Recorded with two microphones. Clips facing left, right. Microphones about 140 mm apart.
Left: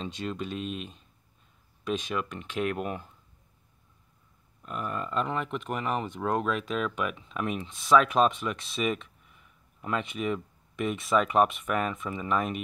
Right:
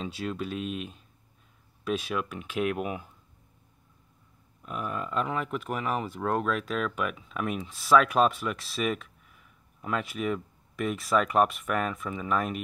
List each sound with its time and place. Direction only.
0.0 s speech: 5° right (ahead or behind)
4.6 s speech: 5° right (ahead or behind)